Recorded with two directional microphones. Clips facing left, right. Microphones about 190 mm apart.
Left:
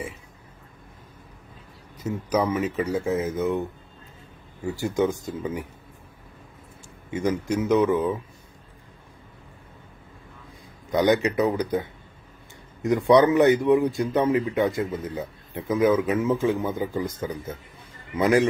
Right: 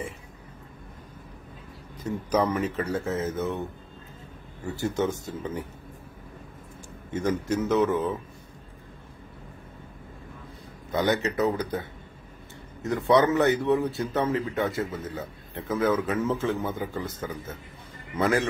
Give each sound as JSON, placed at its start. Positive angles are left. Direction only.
{"t": 2.0, "sound": "speech", "side_deg": 10}
{"t": 4.9, "sound": "speech", "side_deg": 10}
{"t": 7.1, "sound": "speech", "side_deg": 15}
{"t": 10.9, "sound": "speech", "side_deg": 15}